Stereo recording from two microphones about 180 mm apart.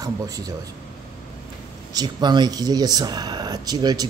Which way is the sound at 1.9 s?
20° right (ahead or behind).